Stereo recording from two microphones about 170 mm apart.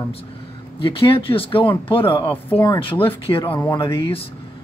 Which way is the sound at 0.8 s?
30° left (ahead or behind).